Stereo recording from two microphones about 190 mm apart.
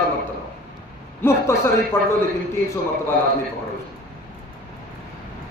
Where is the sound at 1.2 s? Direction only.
15° left (ahead or behind).